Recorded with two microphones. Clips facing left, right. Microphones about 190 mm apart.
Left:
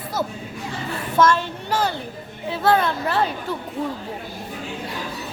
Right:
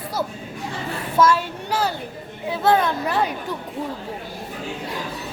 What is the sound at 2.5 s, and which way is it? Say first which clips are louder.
Speech: even; 15° right (ahead or behind).